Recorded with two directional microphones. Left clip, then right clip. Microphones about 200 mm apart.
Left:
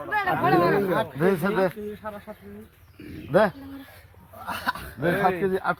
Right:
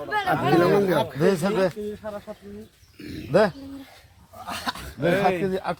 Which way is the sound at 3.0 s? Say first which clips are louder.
Right 1 dB; 35° right (ahead or behind).